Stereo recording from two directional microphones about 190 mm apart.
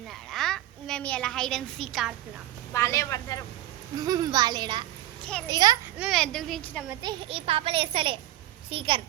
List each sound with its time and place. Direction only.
0.1 s a child's voice: centre (ahead or behind)
2.7 s speech: 15° left (ahead or behind)
3.9 s a child's voice: 20° right (ahead or behind)
6.0 s speech: centre (ahead or behind)
7.0 s a child's voice: 25° right (ahead or behind)